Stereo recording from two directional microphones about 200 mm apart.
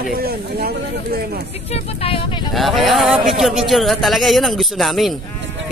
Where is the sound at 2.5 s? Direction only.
Centre (ahead or behind).